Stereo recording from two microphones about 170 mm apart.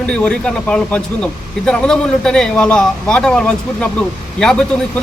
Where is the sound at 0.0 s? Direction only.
5° left (ahead or behind).